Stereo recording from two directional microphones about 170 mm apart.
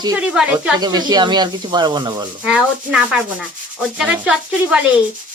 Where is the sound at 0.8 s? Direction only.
25° right (ahead or behind).